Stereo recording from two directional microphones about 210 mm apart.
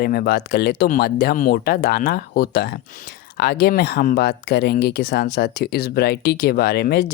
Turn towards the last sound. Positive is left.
turn(degrees=50)  # may be behind; listen again after turning